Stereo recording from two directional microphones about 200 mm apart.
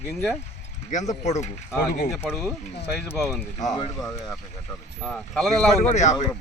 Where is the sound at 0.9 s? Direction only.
35° left (ahead or behind).